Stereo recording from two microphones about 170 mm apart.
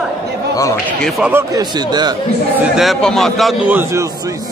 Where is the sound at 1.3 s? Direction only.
20° right (ahead or behind).